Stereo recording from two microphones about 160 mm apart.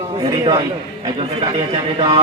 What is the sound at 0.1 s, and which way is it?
A man's voice, 30° right (ahead or behind).